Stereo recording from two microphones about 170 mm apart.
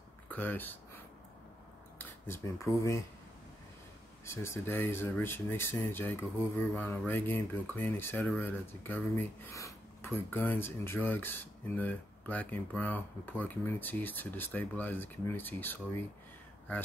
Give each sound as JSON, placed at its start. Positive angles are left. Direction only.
{"t": 0.3, "sound": "speech", "side_deg": 10}
{"t": 4.3, "sound": "speech", "side_deg": 15}